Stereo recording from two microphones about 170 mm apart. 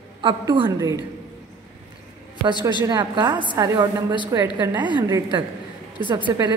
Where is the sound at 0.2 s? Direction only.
30° right (ahead or behind).